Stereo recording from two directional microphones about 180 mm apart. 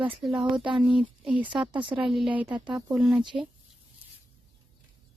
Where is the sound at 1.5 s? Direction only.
25° right (ahead or behind).